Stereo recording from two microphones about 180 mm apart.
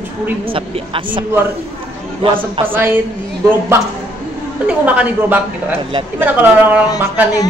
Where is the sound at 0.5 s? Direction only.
30° right (ahead or behind).